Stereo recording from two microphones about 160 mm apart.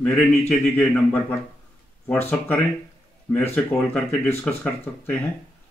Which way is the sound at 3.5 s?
10° left (ahead or behind).